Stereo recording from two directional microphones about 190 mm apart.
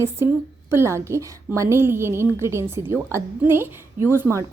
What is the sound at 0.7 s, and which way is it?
A woman's voice, 15° right (ahead or behind).